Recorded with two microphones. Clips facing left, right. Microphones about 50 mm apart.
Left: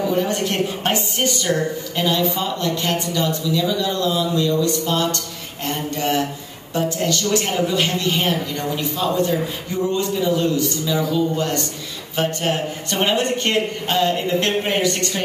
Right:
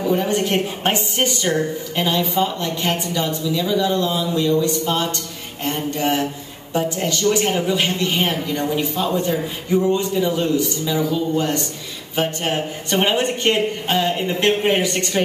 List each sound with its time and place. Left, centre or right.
0.0 s a woman's voice: centre
6.8 s a woman's voice: centre